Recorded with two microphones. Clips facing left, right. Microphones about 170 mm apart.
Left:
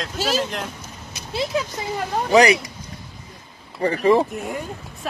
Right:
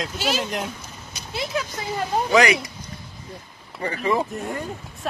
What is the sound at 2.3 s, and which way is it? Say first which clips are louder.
Speech: left 4 dB; 35° left (ahead or behind).